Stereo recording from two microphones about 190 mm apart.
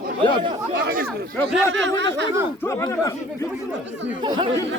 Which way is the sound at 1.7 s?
70° right (ahead or behind).